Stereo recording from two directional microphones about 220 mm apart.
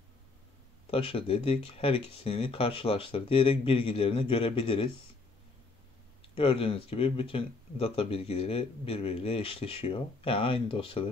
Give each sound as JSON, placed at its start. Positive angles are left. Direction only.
{"t": 0.8, "sound": "speech", "side_deg": 25}
{"t": 6.3, "sound": "speech", "side_deg": 25}